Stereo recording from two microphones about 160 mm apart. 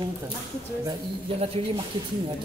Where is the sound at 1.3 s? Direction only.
40° right (ahead or behind).